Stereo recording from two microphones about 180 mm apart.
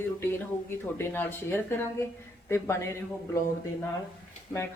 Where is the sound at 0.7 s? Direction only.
15° left (ahead or behind).